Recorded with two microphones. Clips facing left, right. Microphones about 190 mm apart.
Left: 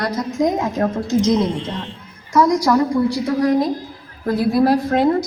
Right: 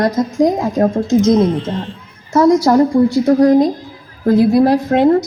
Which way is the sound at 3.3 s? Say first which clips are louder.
Right 8 dB; 45° right (ahead or behind).